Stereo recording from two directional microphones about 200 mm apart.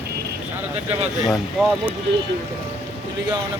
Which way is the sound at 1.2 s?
Centre (ahead or behind).